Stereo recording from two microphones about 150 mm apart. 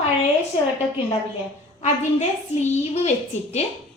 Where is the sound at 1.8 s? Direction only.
50° left (ahead or behind).